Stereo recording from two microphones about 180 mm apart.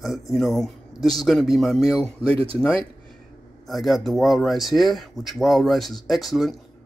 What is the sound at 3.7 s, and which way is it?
A man's voice, centre (ahead or behind).